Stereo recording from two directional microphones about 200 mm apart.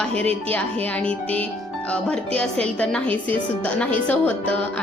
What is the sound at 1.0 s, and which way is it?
Speech, 5° left (ahead or behind).